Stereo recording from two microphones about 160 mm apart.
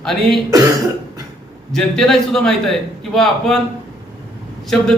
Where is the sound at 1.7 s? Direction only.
5° left (ahead or behind).